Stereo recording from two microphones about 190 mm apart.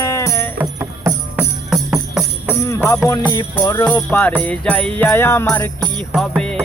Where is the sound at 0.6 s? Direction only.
10° right (ahead or behind).